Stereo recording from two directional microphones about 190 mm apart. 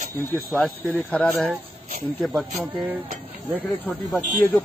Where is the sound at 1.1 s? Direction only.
5° left (ahead or behind).